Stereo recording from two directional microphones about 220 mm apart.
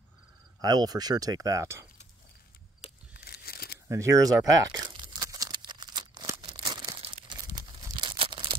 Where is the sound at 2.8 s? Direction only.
25° left (ahead or behind).